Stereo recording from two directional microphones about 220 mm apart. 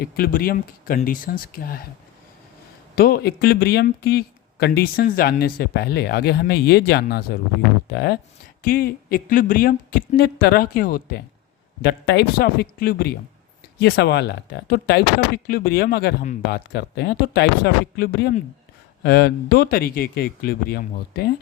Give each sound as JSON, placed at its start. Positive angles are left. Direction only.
{"t": 0.0, "sound": "speech", "side_deg": 40}
{"t": 2.9, "sound": "speech", "side_deg": 45}